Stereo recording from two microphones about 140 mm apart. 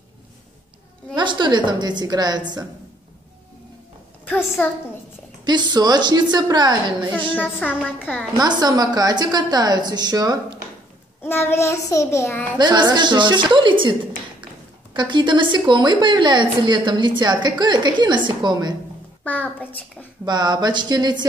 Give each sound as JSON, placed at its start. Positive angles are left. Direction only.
{"t": 1.1, "sound": "a woman's voice", "side_deg": -35}
{"t": 4.3, "sound": "a child's voice", "side_deg": 10}
{"t": 5.4, "sound": "a woman's voice", "side_deg": -30}
{"t": 7.3, "sound": "a child's voice", "side_deg": 10}
{"t": 8.4, "sound": "a woman's voice", "side_deg": -30}
{"t": 11.2, "sound": "child singing", "side_deg": 15}
{"t": 12.5, "sound": "a woman's voice", "side_deg": -30}
{"t": 15.0, "sound": "a woman's voice", "side_deg": -35}
{"t": 19.2, "sound": "a child's voice", "side_deg": 10}
{"t": 20.2, "sound": "a woman's voice", "side_deg": -30}